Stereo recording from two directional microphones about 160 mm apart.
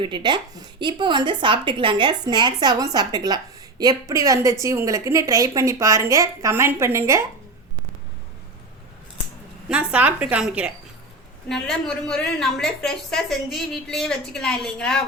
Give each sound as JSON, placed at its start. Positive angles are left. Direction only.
{"t": 0.0, "sound": "a woman's voice", "side_deg": -30}
{"t": 9.6, "sound": "speech", "side_deg": -10}
{"t": 11.4, "sound": "a woman's voice", "side_deg": 5}